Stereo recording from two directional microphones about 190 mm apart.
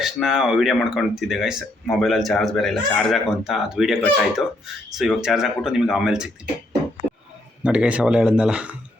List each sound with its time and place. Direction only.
0.0 s speech: centre (ahead or behind)
7.6 s speech: 5° right (ahead or behind)